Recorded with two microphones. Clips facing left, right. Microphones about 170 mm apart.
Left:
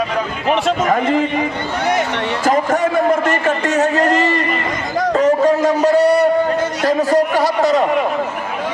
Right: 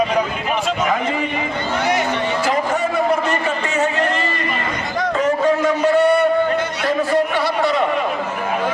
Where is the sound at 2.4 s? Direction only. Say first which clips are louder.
Left 7 dB; 45° left (ahead or behind).